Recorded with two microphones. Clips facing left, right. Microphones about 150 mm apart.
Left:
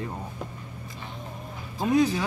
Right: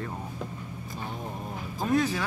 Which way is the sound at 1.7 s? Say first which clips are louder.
Left 4 dB; 15° left (ahead or behind).